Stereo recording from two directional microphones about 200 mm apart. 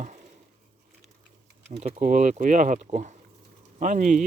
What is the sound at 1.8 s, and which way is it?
Speech, 40° right (ahead or behind).